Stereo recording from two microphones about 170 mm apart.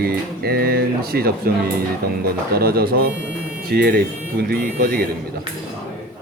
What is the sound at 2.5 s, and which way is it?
A man's voice, 65° right (ahead or behind).